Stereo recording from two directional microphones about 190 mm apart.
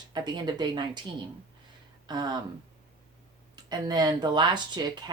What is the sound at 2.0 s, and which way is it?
Speech, 20° right (ahead or behind).